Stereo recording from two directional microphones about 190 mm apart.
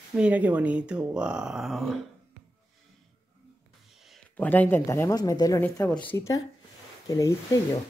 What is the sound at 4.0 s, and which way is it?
A woman's voice, 5° left (ahead or behind).